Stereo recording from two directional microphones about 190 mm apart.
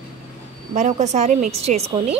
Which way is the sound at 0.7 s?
40° right (ahead or behind).